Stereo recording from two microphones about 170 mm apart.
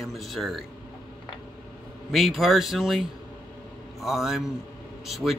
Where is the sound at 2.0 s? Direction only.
Centre (ahead or behind).